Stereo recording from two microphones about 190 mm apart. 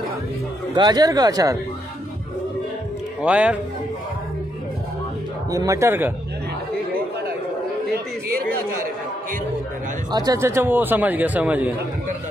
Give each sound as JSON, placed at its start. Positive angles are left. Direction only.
{"t": 0.7, "sound": "speech", "side_deg": -20}
{"t": 3.2, "sound": "speech", "side_deg": -5}
{"t": 5.5, "sound": "a man's voice", "side_deg": -15}
{"t": 10.1, "sound": "a man's voice", "side_deg": -20}